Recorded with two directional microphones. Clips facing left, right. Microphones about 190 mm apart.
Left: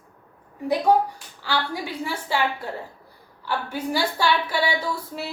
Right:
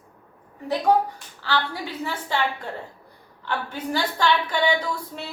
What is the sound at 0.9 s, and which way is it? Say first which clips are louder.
A woman's voice: right 1 dB; 10° left (ahead or behind).